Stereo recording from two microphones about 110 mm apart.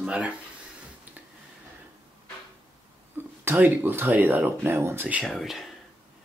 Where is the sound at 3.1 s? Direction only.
20° right (ahead or behind).